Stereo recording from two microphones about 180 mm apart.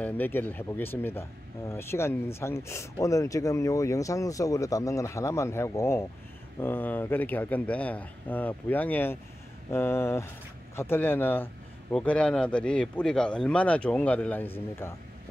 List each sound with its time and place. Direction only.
0.0 s speech: 10° left (ahead or behind)